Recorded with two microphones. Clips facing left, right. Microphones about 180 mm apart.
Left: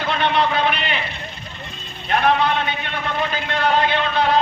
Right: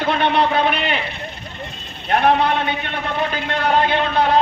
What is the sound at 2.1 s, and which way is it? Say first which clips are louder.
Speech: right 2 dB; 55° right (ahead or behind).